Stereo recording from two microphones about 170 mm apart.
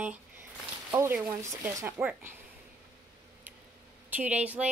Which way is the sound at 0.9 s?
15° right (ahead or behind).